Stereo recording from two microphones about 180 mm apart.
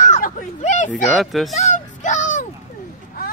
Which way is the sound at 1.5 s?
40° left (ahead or behind).